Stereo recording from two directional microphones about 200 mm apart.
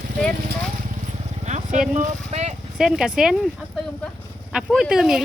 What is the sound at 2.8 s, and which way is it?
Speech, centre (ahead or behind).